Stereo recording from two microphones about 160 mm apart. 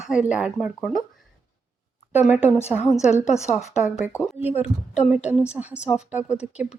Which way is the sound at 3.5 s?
5° right (ahead or behind).